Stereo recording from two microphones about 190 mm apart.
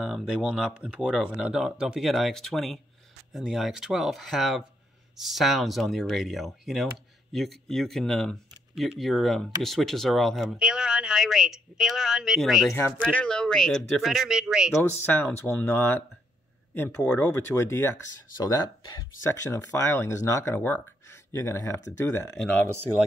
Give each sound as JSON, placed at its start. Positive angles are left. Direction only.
{"t": 0.0, "sound": "speech", "side_deg": -5}
{"t": 12.7, "sound": "speech", "side_deg": 10}
{"t": 14.8, "sound": "speech", "side_deg": 10}